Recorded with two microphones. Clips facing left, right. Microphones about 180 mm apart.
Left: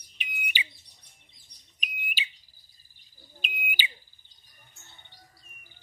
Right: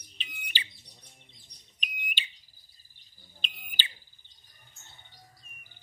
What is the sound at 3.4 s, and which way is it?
Smoke detector, 10° left (ahead or behind).